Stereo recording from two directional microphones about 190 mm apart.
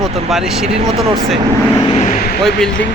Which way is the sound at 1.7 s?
20° left (ahead or behind).